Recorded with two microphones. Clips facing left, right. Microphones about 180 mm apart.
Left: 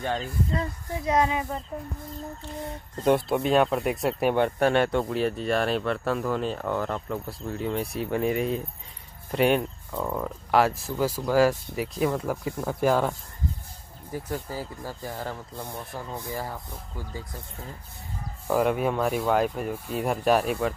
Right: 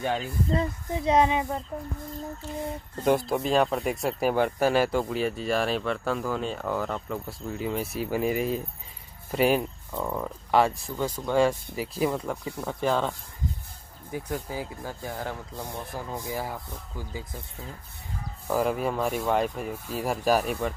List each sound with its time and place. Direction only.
0.0 s speech: 10° right (ahead or behind)
0.5 s speech: 25° right (ahead or behind)
2.4 s speech: centre (ahead or behind)
12.5 s speech: 10° left (ahead or behind)
14.1 s speech: centre (ahead or behind)
18.5 s speech: centre (ahead or behind)